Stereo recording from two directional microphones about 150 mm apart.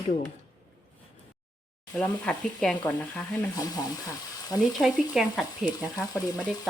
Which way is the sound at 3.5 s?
25° left (ahead or behind).